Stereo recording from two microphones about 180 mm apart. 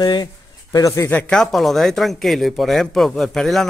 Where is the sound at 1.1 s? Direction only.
5° left (ahead or behind).